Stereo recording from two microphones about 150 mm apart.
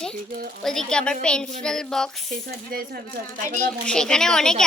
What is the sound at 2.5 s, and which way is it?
Speech, 85° right.